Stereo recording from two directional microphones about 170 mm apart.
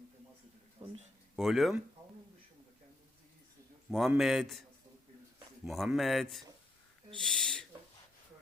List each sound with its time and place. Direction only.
0.8 s a sound: 30° right (ahead or behind)
1.4 s speech: centre (ahead or behind)
3.9 s speech: centre (ahead or behind)
5.6 s speech: centre (ahead or behind)